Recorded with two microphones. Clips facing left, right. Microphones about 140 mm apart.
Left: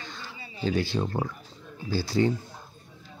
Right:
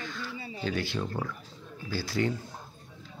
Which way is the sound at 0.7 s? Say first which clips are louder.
Left 5 dB; 30° left (ahead or behind).